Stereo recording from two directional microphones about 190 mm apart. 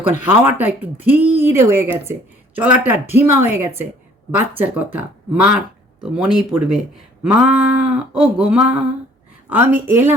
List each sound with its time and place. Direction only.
0.1 s speech: 10° right (ahead or behind)
7.3 s a sound: 5° right (ahead or behind)
9.5 s speech: 10° right (ahead or behind)